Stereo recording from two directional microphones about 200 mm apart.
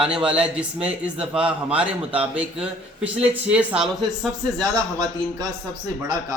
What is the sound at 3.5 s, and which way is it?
Speech, 5° right (ahead or behind).